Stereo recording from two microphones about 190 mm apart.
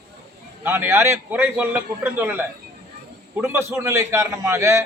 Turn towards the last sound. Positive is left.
turn(degrees=-15)  # may be behind; listen again after turning